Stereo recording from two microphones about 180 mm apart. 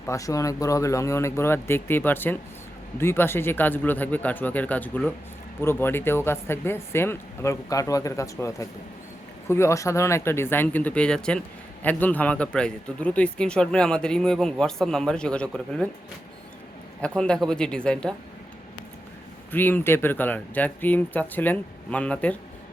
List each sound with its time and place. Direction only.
0.0 s speech: 15° left (ahead or behind)
17.0 s speech: 5° left (ahead or behind)
19.5 s speech: 10° left (ahead or behind)